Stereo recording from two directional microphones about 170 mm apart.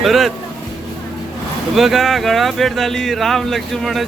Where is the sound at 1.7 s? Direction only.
Centre (ahead or behind).